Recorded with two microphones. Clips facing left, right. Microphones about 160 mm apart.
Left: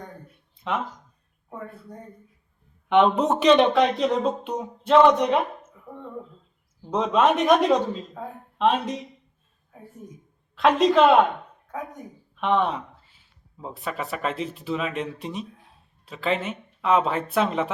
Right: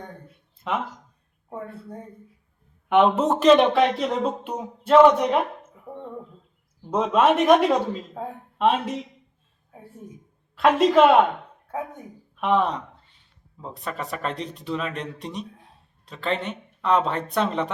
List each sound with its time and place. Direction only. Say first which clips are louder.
0.5 s a sound: right 1 dB; centre (ahead or behind)
1.5 s speech: right 3 dB; 30° right (ahead or behind)
2.9 s speech: even; 5° right (ahead or behind)
6.9 s speech: right 1 dB; 5° right (ahead or behind)
8.2 s speech: right 3 dB; 25° right (ahead or behind)
8.5 s speech: even; 5° right (ahead or behind)
10.5 s speech: right 1 dB; 5° right (ahead or behind)
12.4 s speech: right 1 dB; 5° right (ahead or behind)